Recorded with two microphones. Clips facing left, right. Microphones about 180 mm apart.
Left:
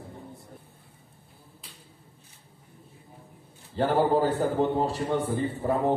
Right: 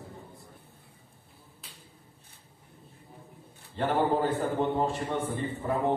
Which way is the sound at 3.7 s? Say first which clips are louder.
Left 4 dB; 35° left (ahead or behind).